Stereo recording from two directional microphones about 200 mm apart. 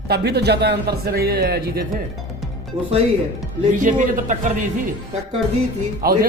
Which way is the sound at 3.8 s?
40° right (ahead or behind).